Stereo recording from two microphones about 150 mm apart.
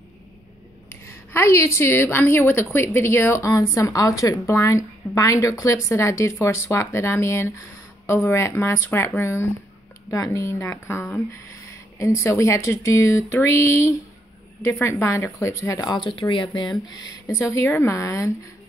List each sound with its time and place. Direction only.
1.0 s a woman's voice: 15° left (ahead or behind)
12.2 s a woman's voice: 20° left (ahead or behind)